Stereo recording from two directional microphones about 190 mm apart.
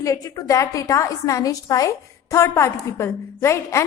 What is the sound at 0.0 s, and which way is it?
A woman's voice, 20° left (ahead or behind).